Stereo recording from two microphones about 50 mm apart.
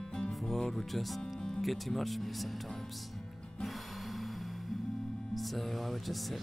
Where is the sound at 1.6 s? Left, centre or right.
Centre.